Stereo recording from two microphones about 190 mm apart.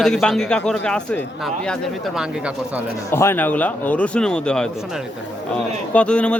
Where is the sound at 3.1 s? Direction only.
10° left (ahead or behind).